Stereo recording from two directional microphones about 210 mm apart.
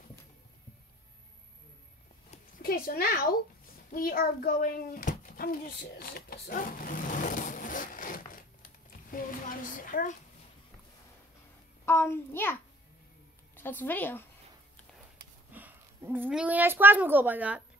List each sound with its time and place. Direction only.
2.6 s a child's voice: 45° left (ahead or behind)
6.0 s vehicle: 45° left (ahead or behind)
11.8 s a child's voice: 10° left (ahead or behind)
13.6 s a woman's voice: 10° left (ahead or behind)
15.5 s a woman's voice: 10° right (ahead or behind)